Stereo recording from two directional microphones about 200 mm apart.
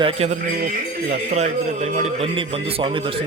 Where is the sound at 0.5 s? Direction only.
45° right (ahead or behind).